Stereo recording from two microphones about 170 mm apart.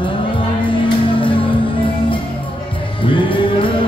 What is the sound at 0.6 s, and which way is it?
Music, 30° left (ahead or behind).